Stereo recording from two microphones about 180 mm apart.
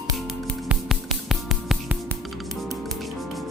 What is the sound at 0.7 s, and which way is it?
Music, centre (ahead or behind).